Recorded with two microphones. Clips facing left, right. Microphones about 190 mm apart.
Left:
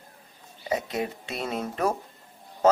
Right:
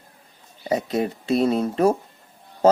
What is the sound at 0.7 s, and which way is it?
Speech, 35° right (ahead or behind).